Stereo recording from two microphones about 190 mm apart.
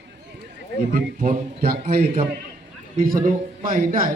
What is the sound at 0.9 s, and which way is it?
Speech, 50° right (ahead or behind).